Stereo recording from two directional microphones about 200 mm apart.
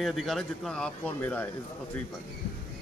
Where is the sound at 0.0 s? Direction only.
Centre (ahead or behind).